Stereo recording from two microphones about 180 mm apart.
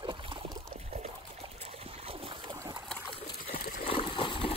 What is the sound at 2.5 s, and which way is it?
Trickle, 25° right (ahead or behind).